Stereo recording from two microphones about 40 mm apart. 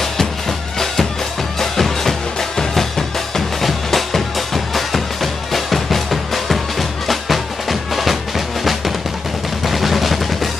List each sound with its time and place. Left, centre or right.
1.6 s music: centre
9.7 s music: centre